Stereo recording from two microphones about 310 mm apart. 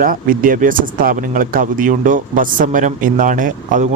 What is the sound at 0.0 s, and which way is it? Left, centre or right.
Speech, right.